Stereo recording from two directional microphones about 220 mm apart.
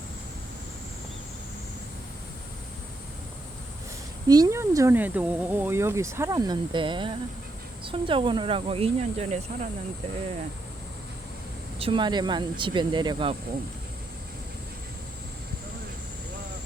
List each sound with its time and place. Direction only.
4.3 s speech: 15° right (ahead or behind)
11.8 s speech: 20° right (ahead or behind)